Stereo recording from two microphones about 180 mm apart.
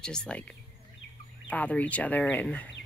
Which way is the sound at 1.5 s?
10° left (ahead or behind).